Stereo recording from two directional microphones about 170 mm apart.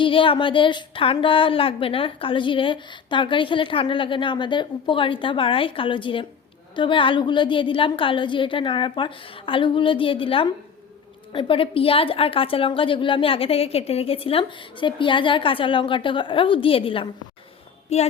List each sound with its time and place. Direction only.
0.0 s a woman's voice: 30° left (ahead or behind)